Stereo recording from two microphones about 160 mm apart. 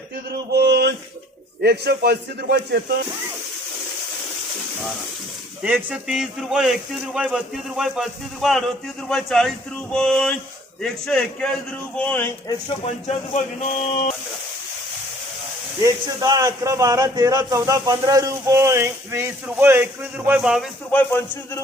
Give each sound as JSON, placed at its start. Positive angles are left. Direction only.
{"t": 0.3, "sound": "a sound", "side_deg": -90}
{"t": 1.6, "sound": "a man's voice", "side_deg": -90}
{"t": 5.6, "sound": "a man's voice", "side_deg": -5}
{"t": 12.5, "sound": "speech", "side_deg": 30}
{"t": 13.1, "sound": "speech", "side_deg": 45}
{"t": 15.8, "sound": "a man's voice", "side_deg": -20}
{"t": 20.9, "sound": "speech", "side_deg": 10}